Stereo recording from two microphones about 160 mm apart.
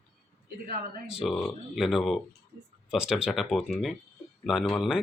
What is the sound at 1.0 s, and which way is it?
Speech, 5° right (ahead or behind).